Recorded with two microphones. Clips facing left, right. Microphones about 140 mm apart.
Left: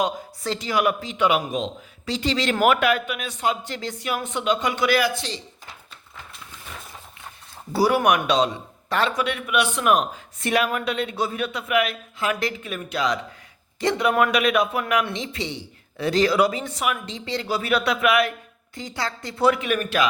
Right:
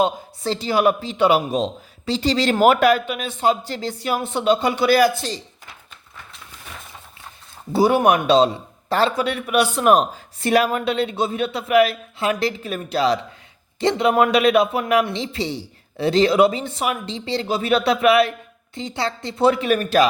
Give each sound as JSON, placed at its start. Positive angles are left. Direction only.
{"t": 0.0, "sound": "a man's voice", "side_deg": -30}
{"t": 7.7, "sound": "a man's voice", "side_deg": -25}